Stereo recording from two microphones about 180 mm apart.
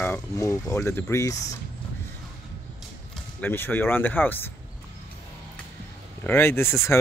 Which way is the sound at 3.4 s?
10° left (ahead or behind).